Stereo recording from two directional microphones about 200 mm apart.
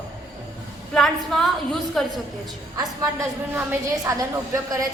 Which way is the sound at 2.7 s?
15° right (ahead or behind).